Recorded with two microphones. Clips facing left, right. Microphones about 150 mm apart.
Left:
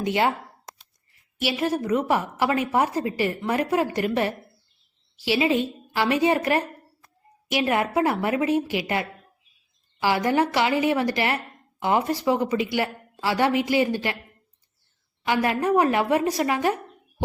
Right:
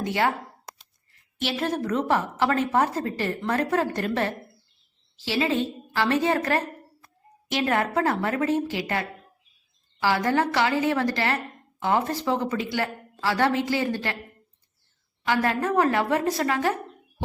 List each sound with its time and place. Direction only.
0.0 s speech: 20° left (ahead or behind)
1.4 s a woman's voice: 10° left (ahead or behind)
15.2 s a woman's voice: 15° left (ahead or behind)